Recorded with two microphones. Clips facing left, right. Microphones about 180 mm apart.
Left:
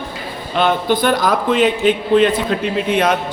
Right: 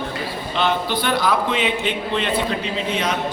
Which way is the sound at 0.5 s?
50° left (ahead or behind).